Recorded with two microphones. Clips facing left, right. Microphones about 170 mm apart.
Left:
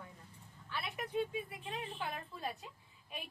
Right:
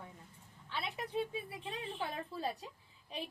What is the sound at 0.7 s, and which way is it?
A woman's voice, 25° right (ahead or behind).